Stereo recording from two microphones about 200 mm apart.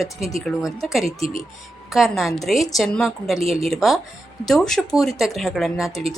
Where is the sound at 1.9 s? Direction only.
Centre (ahead or behind).